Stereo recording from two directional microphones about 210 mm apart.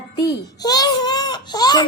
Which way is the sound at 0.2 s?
20° left (ahead or behind).